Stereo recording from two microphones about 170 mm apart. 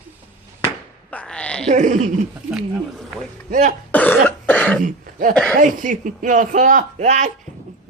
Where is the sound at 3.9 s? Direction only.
10° left (ahead or behind).